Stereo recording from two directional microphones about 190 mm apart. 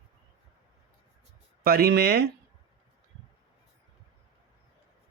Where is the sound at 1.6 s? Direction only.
55° right (ahead or behind).